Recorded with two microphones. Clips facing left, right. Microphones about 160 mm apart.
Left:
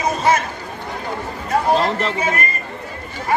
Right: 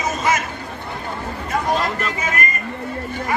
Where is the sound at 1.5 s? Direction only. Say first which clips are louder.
Left 4 dB; 30° left (ahead or behind).